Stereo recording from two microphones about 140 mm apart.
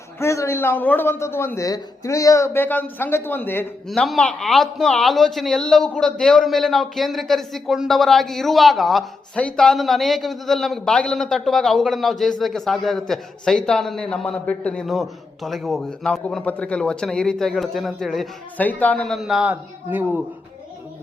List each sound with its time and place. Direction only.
0.2 s a man's voice: 20° left (ahead or behind)
3.8 s a man's voice: centre (ahead or behind)
18.5 s a man's voice: 10° left (ahead or behind); by 20.2 s 10° right (ahead or behind)